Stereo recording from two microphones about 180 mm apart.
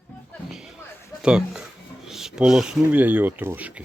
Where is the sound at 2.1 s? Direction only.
Centre (ahead or behind).